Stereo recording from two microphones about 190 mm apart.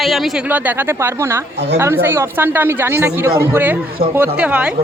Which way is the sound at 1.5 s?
65° right (ahead or behind).